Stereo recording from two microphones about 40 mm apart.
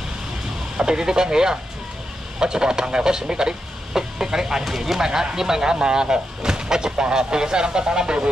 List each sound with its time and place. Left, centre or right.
0.7 s speech: centre